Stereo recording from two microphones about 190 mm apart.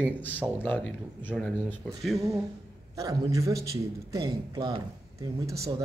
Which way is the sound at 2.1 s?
20° right (ahead or behind).